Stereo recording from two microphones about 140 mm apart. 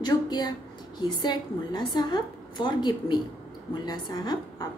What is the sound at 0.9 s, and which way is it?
A woman's voice, 30° left (ahead or behind).